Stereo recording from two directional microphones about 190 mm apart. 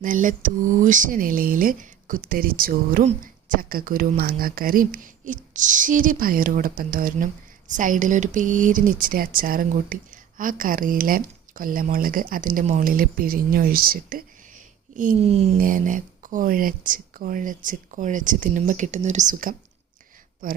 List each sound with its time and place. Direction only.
0.0 s speech: 45° right (ahead or behind)
15.2 s speech: 30° right (ahead or behind)
15.5 s speech: 45° right (ahead or behind)